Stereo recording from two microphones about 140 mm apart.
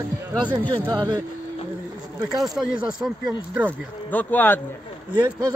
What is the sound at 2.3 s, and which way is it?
Speech, 5° right (ahead or behind).